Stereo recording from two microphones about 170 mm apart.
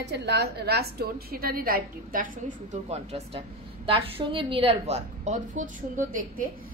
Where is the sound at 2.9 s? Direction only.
40° right (ahead or behind).